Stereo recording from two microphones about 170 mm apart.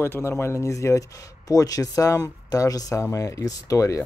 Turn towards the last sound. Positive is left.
turn(degrees=20)  # may be behind; listen again after turning